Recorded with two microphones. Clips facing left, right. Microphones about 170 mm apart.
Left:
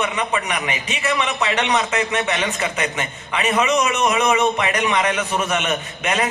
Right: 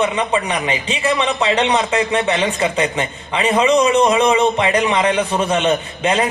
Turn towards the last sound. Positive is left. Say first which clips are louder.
# right 4 dB
turn(degrees=-30)  # may be behind; listen again after turning